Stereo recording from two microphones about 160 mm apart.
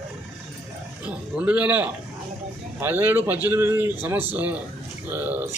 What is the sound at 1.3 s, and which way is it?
A man's voice, 10° right (ahead or behind).